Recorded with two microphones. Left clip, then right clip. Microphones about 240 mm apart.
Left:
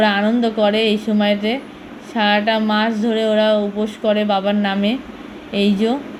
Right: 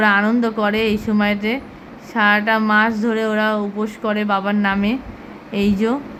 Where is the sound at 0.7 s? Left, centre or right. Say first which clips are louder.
Left 2 dB; right.